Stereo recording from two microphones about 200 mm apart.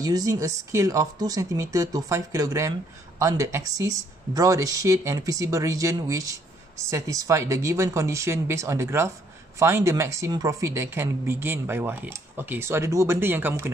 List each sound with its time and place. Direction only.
0.0 s speech: 20° right (ahead or behind)